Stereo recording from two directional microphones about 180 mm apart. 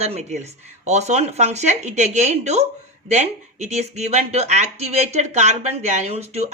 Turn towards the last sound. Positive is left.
turn(degrees=-35)  # may be behind; listen again after turning